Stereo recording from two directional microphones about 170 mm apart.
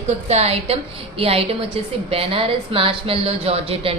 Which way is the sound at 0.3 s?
40° right (ahead or behind).